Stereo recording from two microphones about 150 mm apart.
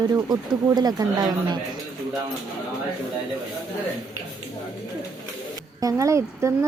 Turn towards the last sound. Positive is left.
turn(degrees=-20)  # may be behind; listen again after turning